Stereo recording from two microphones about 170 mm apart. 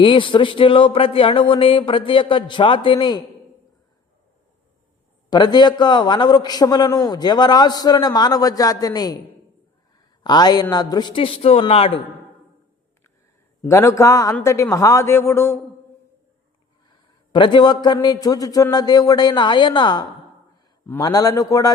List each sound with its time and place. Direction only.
0.0 s speech: 30° left (ahead or behind)
5.3 s a man's voice: 25° left (ahead or behind)
10.2 s a man's voice: 25° left (ahead or behind)
13.6 s a man's voice: 15° left (ahead or behind)
17.3 s a man's voice: 25° left (ahead or behind)